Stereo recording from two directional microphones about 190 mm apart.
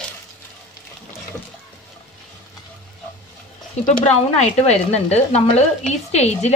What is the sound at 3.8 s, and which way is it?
A woman's voice, 35° left (ahead or behind).